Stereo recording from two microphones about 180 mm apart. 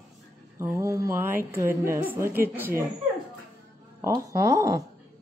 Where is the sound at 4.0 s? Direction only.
15° right (ahead or behind).